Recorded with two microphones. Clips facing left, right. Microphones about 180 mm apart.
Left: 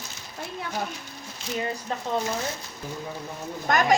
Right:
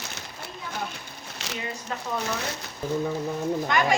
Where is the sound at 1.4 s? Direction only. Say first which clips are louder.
Left 3 dB; 75° right (ahead or behind).